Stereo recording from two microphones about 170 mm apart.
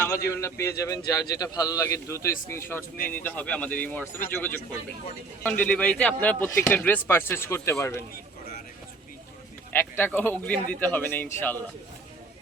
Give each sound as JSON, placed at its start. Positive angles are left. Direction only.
{"t": 0.0, "sound": "a man's voice", "side_deg": 15}
{"t": 9.7, "sound": "a man's voice", "side_deg": 10}